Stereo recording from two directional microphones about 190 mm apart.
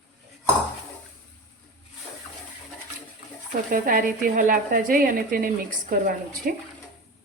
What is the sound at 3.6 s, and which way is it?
Speech, 45° right (ahead or behind).